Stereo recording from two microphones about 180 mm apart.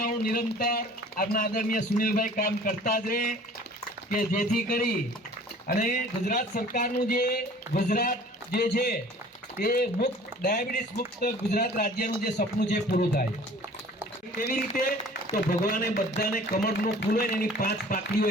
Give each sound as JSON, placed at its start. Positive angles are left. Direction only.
{"t": 0.0, "sound": "a man's voice", "side_deg": 50}
{"t": 14.3, "sound": "a man's voice", "side_deg": 50}